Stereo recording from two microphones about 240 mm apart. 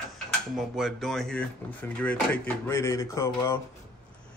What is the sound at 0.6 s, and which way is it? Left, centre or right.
Speech, centre.